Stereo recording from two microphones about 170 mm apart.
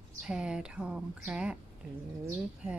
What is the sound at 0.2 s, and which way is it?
Speech, 5° right (ahead or behind).